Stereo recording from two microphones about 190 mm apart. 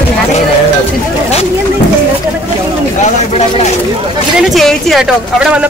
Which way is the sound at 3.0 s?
35° left (ahead or behind).